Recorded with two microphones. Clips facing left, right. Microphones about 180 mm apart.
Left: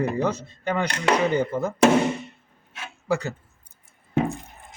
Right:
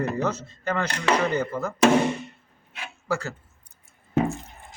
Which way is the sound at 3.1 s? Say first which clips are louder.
Left 3 dB; 15° left (ahead or behind).